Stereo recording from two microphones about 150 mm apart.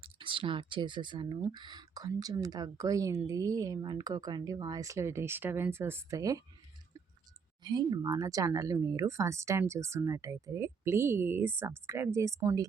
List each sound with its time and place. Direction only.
0.0 s speech: 35° right (ahead or behind)
7.6 s speech: 30° right (ahead or behind)